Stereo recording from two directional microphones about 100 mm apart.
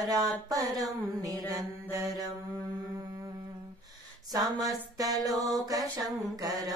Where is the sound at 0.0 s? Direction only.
40° right (ahead or behind).